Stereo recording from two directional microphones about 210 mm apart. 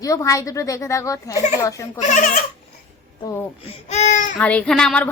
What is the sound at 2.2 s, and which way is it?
Speech, 40° left (ahead or behind).